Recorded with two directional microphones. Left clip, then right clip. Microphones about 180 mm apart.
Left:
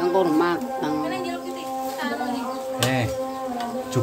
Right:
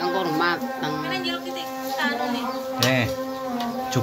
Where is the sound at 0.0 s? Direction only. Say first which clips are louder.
Left 2 dB; 75° left (ahead or behind).